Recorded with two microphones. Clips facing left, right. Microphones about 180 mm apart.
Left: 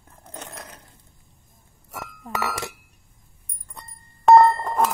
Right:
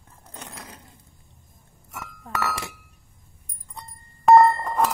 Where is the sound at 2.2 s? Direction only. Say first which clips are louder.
Even; 15° left (ahead or behind).